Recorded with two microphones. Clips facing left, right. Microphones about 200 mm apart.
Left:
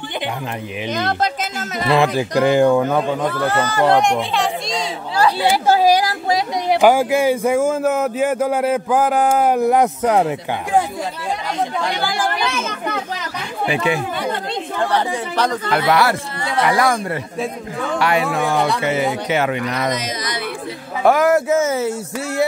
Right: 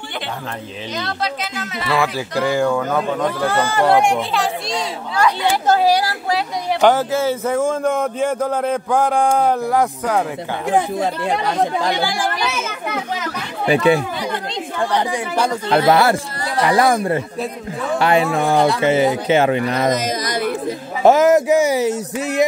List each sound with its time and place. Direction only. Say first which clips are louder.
0.9 s speech: left 3 dB; 50° left (ahead or behind)
1.9 s speech: left 4 dB; 20° left (ahead or behind)
3.3 s speech: even; 10° right (ahead or behind)
5.1 s chatter: left 1 dB; 30° left (ahead or behind)
5.7 s speech: left 1 dB; 15° left (ahead or behind)
9.6 s speech: left 3 dB; 20° left (ahead or behind)
12.4 s children playing: left 1 dB; 5° right (ahead or behind)
13.7 s speech: right 6 dB; 35° right (ahead or behind)
14.9 s speech: even; 15° right (ahead or behind)
15.8 s speech: right 3 dB; 30° right (ahead or behind)
19.8 s a sound: right 4 dB; 45° right (ahead or behind)
21.0 s speech: right 3 dB; 20° right (ahead or behind)